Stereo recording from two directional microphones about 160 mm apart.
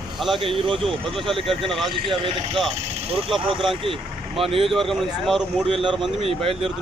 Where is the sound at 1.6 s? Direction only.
Centre (ahead or behind).